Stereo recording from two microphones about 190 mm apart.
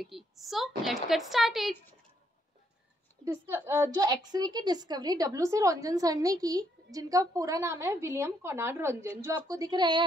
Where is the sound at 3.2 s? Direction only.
10° right (ahead or behind).